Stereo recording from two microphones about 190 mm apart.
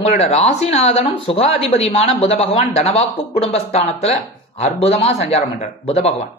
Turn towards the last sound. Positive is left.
turn(degrees=35)  # may be behind; listen again after turning